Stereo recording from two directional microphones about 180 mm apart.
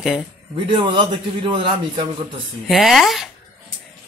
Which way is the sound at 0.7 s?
25° right (ahead or behind).